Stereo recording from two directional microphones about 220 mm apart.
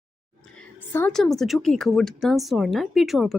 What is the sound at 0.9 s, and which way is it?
Speech, 5° left (ahead or behind).